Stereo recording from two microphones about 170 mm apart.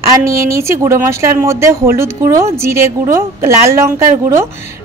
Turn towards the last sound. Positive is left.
turn(degrees=-15)  # may be behind; listen again after turning